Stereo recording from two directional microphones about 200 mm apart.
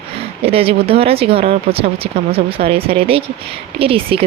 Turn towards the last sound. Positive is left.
turn(degrees=-30)  # may be behind; listen again after turning